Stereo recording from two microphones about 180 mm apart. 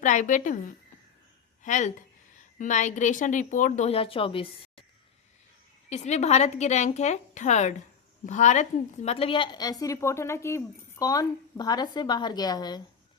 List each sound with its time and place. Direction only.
0.0 s a woman's voice: 45° left (ahead or behind)
1.6 s a woman's voice: 45° left (ahead or behind)
5.9 s a woman's voice: 40° left (ahead or behind); by 12.8 s 20° left (ahead or behind)